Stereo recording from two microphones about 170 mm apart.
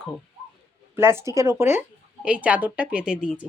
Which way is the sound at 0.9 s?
15° right (ahead or behind).